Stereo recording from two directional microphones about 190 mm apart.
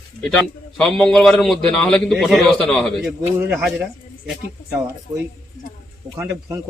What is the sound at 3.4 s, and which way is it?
Speech, 10° right (ahead or behind).